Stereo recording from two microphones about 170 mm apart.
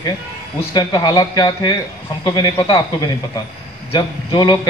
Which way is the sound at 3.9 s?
25° left (ahead or behind).